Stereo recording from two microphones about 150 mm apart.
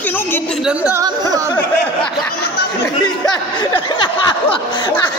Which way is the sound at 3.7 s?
35° left (ahead or behind).